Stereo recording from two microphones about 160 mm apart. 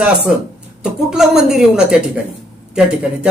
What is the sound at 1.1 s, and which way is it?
Speech, centre (ahead or behind).